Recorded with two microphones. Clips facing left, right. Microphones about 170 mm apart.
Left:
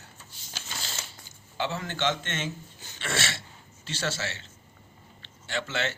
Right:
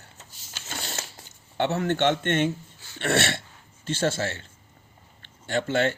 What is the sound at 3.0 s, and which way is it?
A man's voice, 60° right (ahead or behind).